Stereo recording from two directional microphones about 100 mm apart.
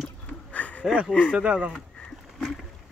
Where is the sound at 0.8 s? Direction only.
10° right (ahead or behind).